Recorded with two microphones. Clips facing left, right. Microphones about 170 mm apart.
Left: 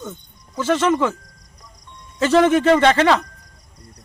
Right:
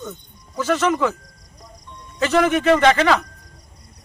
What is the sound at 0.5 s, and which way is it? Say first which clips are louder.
Speech: left 2 dB; 25° left (ahead or behind).